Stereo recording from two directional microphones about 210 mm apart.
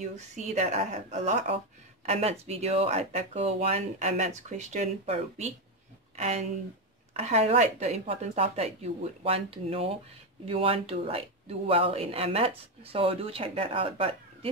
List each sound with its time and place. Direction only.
0.0 s speech: 35° right (ahead or behind)